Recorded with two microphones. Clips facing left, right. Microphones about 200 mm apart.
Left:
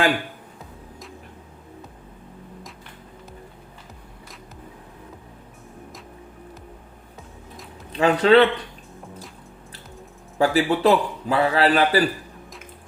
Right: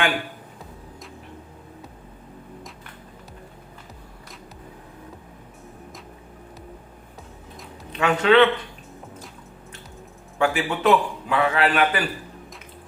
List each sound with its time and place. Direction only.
7.9 s a man's voice: 35° left (ahead or behind)
10.3 s a man's voice: 35° left (ahead or behind)